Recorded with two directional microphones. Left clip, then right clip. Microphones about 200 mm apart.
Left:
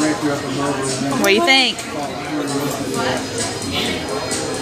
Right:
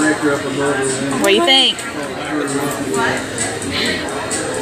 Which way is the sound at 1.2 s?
25° left (ahead or behind).